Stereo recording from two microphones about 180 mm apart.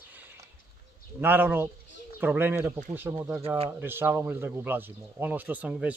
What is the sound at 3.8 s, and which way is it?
Speech, 10° right (ahead or behind).